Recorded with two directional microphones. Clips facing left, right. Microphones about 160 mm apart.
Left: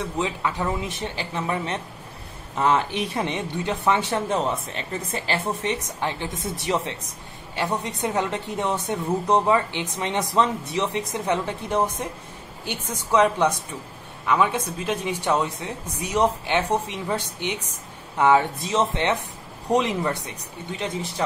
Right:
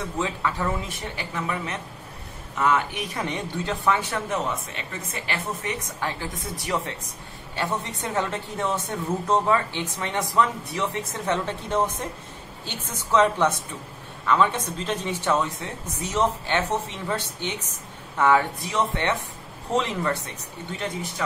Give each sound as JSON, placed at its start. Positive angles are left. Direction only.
{"t": 0.2, "sound": "speech", "side_deg": 20}
{"t": 6.3, "sound": "speech", "side_deg": 0}
{"t": 6.6, "sound": "a woman's voice", "side_deg": 20}